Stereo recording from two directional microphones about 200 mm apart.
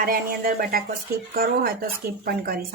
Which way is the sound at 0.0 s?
45° right (ahead or behind).